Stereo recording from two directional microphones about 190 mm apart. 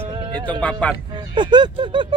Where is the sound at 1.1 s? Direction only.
25° right (ahead or behind).